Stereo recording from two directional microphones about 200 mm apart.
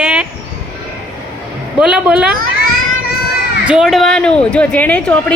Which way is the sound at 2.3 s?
45° right (ahead or behind).